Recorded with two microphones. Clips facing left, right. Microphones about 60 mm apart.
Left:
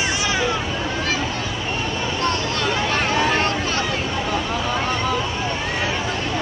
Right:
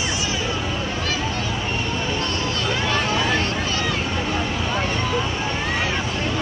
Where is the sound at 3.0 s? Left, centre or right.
Left.